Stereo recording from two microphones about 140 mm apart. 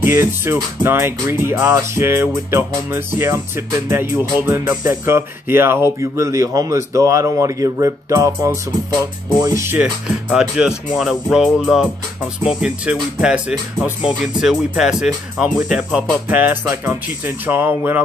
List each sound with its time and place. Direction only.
0.0 s speech: 20° right (ahead or behind)
9.4 s speech: 20° right (ahead or behind)
9.8 s speech: 5° right (ahead or behind)